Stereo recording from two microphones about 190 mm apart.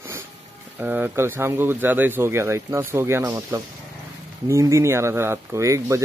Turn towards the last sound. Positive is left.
turn(degrees=-15)  # may be behind; listen again after turning